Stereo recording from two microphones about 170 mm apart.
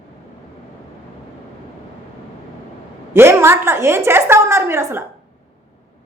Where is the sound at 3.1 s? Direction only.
15° right (ahead or behind).